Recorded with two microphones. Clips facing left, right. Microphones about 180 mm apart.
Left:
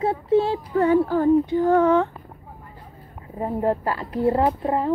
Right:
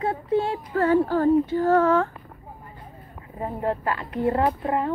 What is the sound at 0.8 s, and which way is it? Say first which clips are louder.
Speech: left 1 dB; 10° left (ahead or behind).